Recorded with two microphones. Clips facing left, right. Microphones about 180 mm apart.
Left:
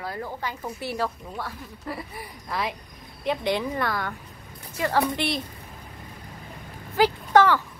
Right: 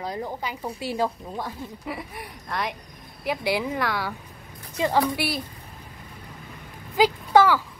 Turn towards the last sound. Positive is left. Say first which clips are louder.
# right 1 dB
turn(degrees=-10)  # may be behind; listen again after turning